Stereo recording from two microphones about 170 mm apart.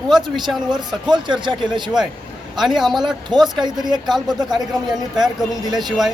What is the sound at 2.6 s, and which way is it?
Speech, centre (ahead or behind).